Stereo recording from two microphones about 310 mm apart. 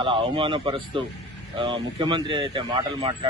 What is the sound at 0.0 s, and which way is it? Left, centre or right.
Speech, centre.